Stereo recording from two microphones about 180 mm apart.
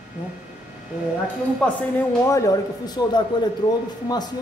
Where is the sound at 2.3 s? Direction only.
20° left (ahead or behind).